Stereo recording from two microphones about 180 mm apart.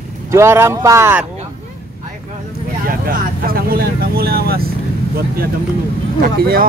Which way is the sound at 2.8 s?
55° right (ahead or behind).